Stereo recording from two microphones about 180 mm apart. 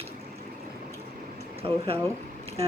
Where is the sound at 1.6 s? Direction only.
30° right (ahead or behind).